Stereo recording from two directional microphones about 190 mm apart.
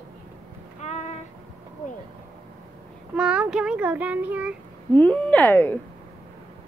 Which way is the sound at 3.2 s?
5° right (ahead or behind).